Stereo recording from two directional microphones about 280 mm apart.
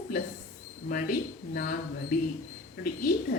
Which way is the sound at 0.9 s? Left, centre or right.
Left.